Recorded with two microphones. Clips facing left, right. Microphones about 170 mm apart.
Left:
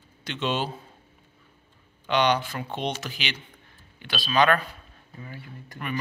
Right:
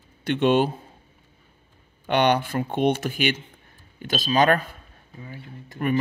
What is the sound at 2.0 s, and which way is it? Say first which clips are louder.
Speech: right 3 dB; 55° right (ahead or behind).